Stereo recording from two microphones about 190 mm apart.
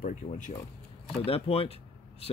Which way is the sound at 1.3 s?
30° left (ahead or behind).